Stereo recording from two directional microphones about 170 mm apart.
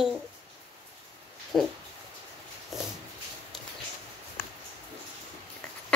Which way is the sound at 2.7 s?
Centre (ahead or behind).